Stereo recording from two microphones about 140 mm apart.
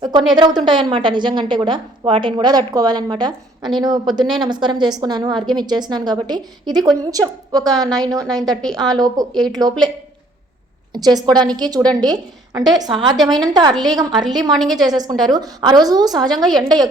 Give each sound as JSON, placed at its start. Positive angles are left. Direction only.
{"t": 0.0, "sound": "a woman's voice", "side_deg": -30}
{"t": 4.2, "sound": "a woman's voice", "side_deg": 0}
{"t": 4.4, "sound": "a woman's voice", "side_deg": -35}
{"t": 9.3, "sound": "a woman's voice", "side_deg": 0}
{"t": 9.6, "sound": "a woman's voice", "side_deg": -30}
{"t": 10.9, "sound": "a woman's voice", "side_deg": -30}
{"t": 14.5, "sound": "a woman's voice", "side_deg": 0}
{"t": 14.8, "sound": "a woman's voice", "side_deg": -30}
{"t": 16.3, "sound": "a woman's voice", "side_deg": 0}